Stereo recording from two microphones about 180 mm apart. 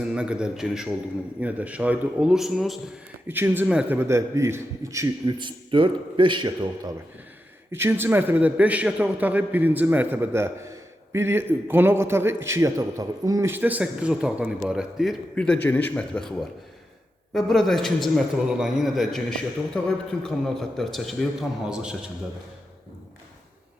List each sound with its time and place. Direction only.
0.0 s a man's voice: 5° right (ahead or behind); by 6.9 s 25° right (ahead or behind)
7.7 s a man's voice: 10° right (ahead or behind); by 16.3 s 5° left (ahead or behind)
17.3 s a man's voice: centre (ahead or behind)